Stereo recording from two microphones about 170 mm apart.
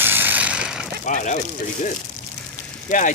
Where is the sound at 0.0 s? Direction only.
10° right (ahead or behind).